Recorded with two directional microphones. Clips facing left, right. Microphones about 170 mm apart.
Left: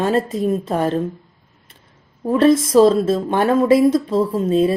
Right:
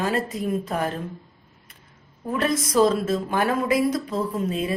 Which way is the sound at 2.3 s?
25° left (ahead or behind).